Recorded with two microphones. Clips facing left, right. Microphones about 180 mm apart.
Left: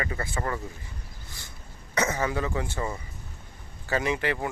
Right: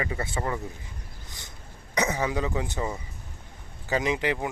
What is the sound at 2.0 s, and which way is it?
Speech, 15° right (ahead or behind).